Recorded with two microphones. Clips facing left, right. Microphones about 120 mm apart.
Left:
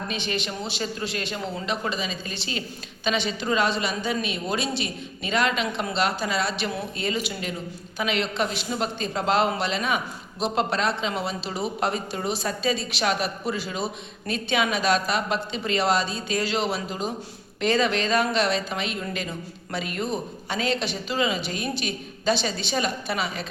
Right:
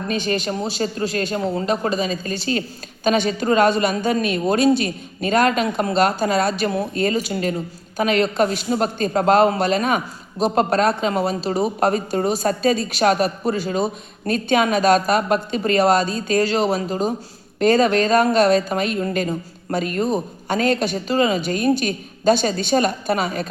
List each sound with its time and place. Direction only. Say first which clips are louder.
0.1 s a man's voice: right 10 dB; 45° right (ahead or behind)